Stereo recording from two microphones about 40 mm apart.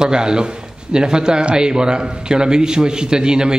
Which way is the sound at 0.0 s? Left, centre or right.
Centre.